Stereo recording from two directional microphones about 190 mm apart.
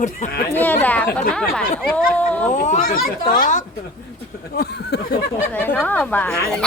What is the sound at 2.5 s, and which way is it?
Speech, 45° left (ahead or behind).